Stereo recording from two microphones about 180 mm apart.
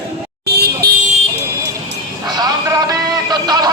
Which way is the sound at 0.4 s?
65° right (ahead or behind).